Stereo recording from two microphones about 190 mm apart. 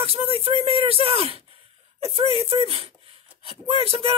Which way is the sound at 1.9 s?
30° right (ahead or behind).